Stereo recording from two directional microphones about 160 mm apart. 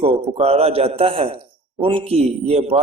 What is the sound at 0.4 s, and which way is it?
A man's voice, 40° right (ahead or behind).